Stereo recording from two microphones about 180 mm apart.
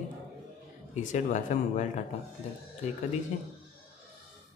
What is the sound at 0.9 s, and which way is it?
Speech, 40° left (ahead or behind).